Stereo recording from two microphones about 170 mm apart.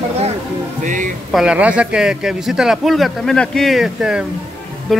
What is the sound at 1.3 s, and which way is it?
A man's voice, 5° right (ahead or behind).